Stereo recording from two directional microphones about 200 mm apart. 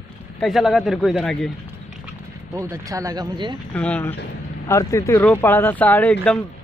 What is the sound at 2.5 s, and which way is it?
Speech, 15° right (ahead or behind).